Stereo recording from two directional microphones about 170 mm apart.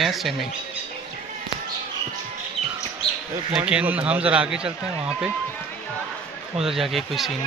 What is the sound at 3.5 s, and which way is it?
Speech, 5° right (ahead or behind).